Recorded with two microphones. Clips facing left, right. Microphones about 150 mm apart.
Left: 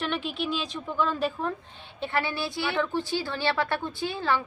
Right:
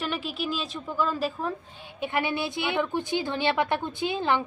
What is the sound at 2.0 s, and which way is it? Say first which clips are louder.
A woman's voice: right 1 dB; 15° right (ahead or behind).